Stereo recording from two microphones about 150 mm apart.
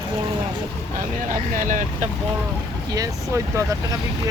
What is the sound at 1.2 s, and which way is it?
Speech, 60° right (ahead or behind).